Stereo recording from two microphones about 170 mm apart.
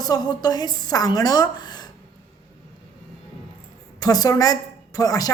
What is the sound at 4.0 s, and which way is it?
A woman's voice, 20° left (ahead or behind).